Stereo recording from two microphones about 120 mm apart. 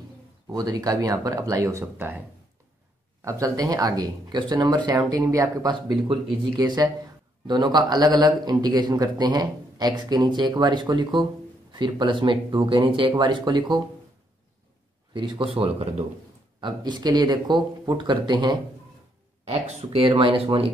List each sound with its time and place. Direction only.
0.5 s speech: 30° right (ahead or behind)
3.3 s a man's voice: 30° right (ahead or behind)
5.7 s a man's voice: 40° right (ahead or behind)
15.1 s speech: 45° right (ahead or behind)
16.6 s a man's voice: 35° right (ahead or behind)
19.4 s speech: 60° right (ahead or behind)